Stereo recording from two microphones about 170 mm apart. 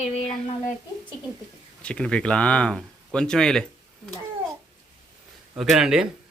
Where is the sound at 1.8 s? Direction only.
5° left (ahead or behind).